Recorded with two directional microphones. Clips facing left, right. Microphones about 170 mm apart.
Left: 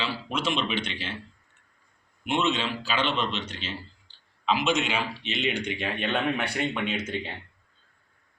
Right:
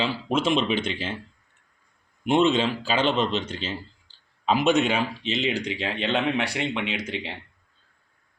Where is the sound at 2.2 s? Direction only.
45° right (ahead or behind).